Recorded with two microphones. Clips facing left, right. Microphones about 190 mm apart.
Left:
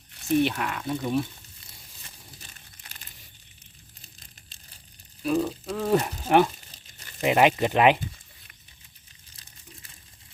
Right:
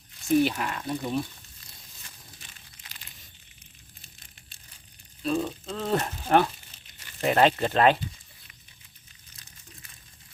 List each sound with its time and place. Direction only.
0.3 s speech: centre (ahead or behind)
2.4 s crumpling: 45° left (ahead or behind)
5.2 s speech: 5° left (ahead or behind)